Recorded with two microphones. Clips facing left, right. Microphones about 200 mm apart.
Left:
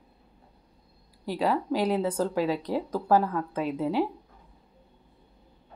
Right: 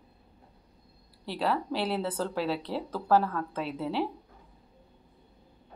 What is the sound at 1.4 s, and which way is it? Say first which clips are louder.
Speech: left 4 dB; 10° left (ahead or behind).